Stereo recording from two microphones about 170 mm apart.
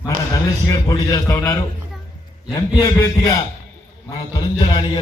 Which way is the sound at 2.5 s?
20° left (ahead or behind).